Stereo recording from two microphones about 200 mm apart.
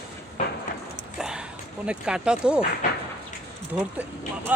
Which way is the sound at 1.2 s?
5° right (ahead or behind).